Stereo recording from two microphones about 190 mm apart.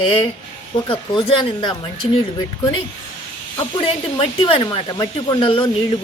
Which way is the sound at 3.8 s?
30° left (ahead or behind).